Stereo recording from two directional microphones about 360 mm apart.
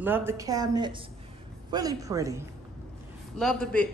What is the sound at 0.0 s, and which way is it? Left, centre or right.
A woman's voice, centre.